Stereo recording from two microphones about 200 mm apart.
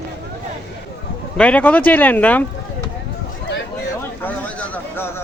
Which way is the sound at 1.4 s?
5° left (ahead or behind).